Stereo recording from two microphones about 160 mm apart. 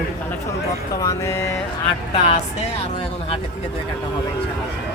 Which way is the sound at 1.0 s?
15° left (ahead or behind).